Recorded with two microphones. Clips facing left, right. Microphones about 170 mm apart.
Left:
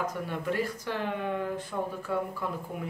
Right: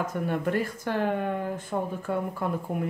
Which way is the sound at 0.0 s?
50° right (ahead or behind).